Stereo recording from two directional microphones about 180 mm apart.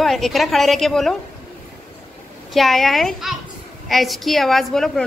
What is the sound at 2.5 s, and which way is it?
A woman's voice, centre (ahead or behind).